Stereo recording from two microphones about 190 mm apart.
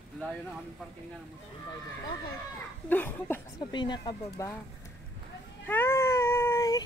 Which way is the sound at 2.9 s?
10° left (ahead or behind).